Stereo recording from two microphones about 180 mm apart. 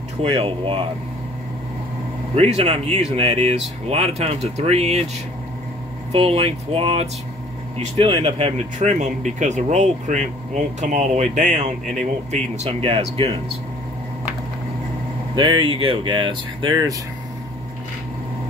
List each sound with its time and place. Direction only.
0.4 s speech: 30° right (ahead or behind)
2.3 s speech: 35° right (ahead or behind)
6.1 s speech: 30° right (ahead or behind)
8.7 s speech: 45° right (ahead or behind)
15.3 s speech: 25° right (ahead or behind)